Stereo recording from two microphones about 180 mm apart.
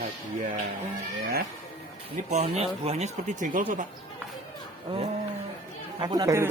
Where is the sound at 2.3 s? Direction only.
35° right (ahead or behind).